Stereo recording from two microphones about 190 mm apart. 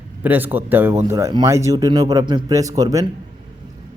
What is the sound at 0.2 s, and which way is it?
Speech, 10° right (ahead or behind).